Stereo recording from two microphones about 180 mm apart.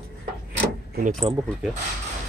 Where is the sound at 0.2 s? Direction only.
55° right (ahead or behind).